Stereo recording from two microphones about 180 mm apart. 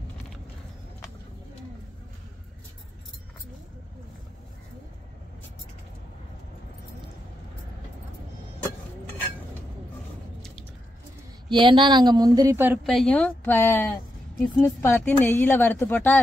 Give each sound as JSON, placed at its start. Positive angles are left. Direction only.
{"t": 11.4, "sound": "a woman's voice", "side_deg": -25}
{"t": 12.8, "sound": "a woman's voice", "side_deg": 0}